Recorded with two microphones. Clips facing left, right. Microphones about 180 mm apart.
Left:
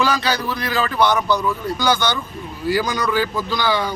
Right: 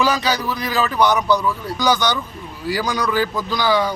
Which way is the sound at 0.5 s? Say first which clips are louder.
Right 1 dB; 10° right (ahead or behind).